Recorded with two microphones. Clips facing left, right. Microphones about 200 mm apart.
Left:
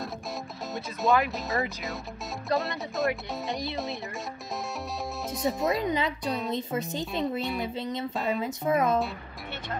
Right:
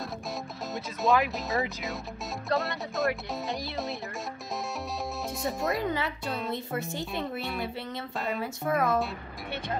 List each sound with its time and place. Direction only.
0.7 s speech: centre (ahead or behind)
5.3 s speech: centre (ahead or behind)
5.9 s speech: 20° left (ahead or behind)
6.2 s speech: centre (ahead or behind)
6.5 s a woman's voice: 20° left (ahead or behind)